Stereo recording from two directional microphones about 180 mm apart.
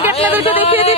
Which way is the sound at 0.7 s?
30° left (ahead or behind).